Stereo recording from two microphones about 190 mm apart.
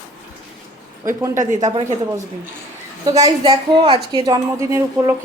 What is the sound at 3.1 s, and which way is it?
A woman's voice, 20° right (ahead or behind).